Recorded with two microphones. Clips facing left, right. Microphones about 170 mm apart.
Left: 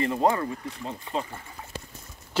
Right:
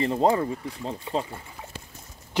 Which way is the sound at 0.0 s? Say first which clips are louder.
Right 1 dB; 25° right (ahead or behind).